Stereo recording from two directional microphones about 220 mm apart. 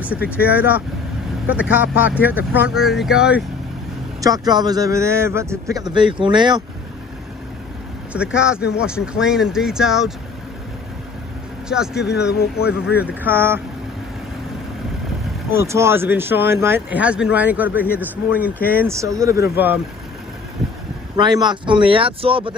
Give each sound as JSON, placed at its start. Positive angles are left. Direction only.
{"t": 0.4, "sound": "speech", "side_deg": -5}
{"t": 4.2, "sound": "speech", "side_deg": -15}
{"t": 8.1, "sound": "speech", "side_deg": -5}
{"t": 11.7, "sound": "speech", "side_deg": 0}
{"t": 15.5, "sound": "speech", "side_deg": -10}
{"t": 18.5, "sound": "speech", "side_deg": 10}
{"t": 18.8, "sound": "speech", "side_deg": -15}
{"t": 21.2, "sound": "speech", "side_deg": -20}